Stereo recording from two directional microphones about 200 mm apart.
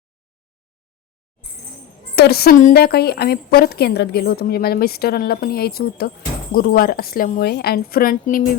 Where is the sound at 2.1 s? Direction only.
50° left (ahead or behind).